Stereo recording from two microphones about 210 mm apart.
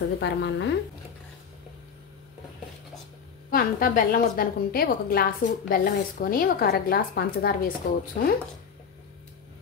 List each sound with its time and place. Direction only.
0.2 s a woman's voice: 55° left (ahead or behind)
3.4 s a woman's voice: 40° left (ahead or behind)